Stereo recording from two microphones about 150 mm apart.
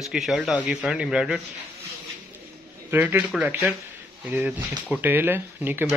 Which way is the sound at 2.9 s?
15° right (ahead or behind).